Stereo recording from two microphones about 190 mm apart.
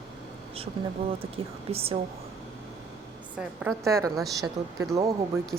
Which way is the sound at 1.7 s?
30° right (ahead or behind).